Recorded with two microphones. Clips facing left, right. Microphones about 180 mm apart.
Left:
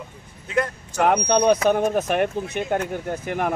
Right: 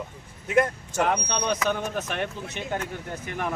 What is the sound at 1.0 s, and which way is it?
Speech, 55° left (ahead or behind).